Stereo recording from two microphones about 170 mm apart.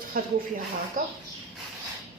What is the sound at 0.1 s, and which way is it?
Speech, 55° right (ahead or behind).